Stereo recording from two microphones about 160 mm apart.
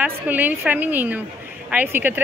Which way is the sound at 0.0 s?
10° right (ahead or behind).